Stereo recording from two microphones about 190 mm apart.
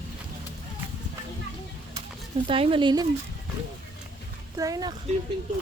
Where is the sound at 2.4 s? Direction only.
25° right (ahead or behind).